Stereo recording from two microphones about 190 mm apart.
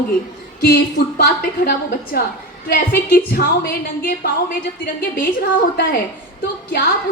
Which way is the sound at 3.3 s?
55° left (ahead or behind).